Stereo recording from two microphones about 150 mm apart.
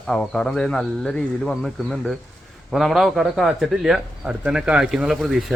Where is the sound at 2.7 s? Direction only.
Centre (ahead or behind).